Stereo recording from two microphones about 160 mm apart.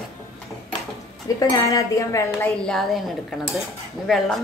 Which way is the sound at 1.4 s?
20° left (ahead or behind).